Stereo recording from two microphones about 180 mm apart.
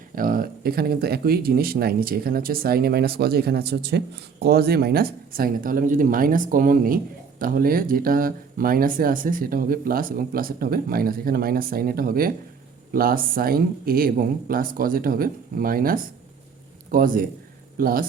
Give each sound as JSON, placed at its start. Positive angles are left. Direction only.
{"t": 0.2, "sound": "speech", "side_deg": -50}